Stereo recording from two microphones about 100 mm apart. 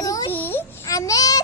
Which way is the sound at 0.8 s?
35° left (ahead or behind).